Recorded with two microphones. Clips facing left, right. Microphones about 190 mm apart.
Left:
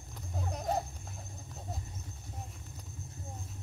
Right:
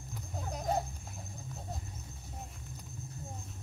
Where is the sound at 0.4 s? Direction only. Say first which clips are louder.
Even; centre (ahead or behind).